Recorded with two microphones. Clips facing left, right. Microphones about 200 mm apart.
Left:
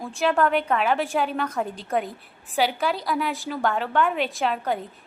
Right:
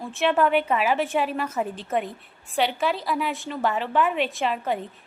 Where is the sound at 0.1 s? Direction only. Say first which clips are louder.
Right 1 dB; centre (ahead or behind).